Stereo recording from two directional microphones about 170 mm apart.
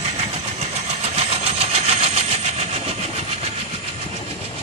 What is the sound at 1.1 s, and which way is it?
Vehicle, 40° right (ahead or behind).